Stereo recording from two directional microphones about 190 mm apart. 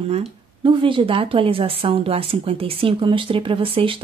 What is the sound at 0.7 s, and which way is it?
Speech, 25° right (ahead or behind).